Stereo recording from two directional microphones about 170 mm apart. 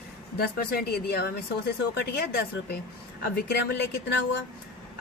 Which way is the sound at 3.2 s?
65° left (ahead or behind).